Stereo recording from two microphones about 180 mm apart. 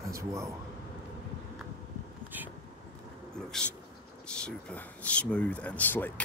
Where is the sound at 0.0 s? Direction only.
15° right (ahead or behind).